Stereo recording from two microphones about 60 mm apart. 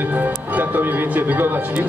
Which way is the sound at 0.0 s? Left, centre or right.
Right.